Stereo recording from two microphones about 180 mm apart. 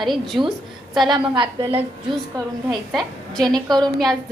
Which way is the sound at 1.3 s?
25° right (ahead or behind).